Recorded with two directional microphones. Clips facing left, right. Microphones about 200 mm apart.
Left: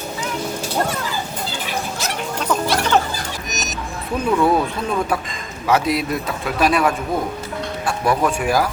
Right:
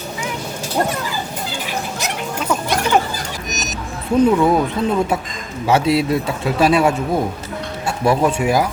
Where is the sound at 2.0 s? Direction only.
15° right (ahead or behind).